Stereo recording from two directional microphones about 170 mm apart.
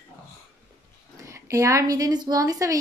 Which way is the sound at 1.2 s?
20° right (ahead or behind).